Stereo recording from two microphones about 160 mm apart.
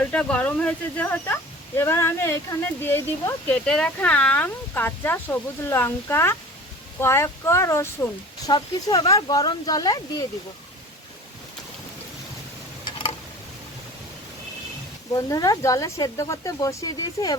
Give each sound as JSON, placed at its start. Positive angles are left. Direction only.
{"t": 0.0, "sound": "speech", "side_deg": 5}
{"t": 15.1, "sound": "speech", "side_deg": 20}